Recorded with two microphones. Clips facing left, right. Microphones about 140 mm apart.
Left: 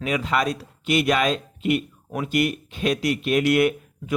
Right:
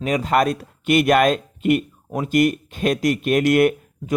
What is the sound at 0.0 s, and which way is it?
Speech, 40° right (ahead or behind).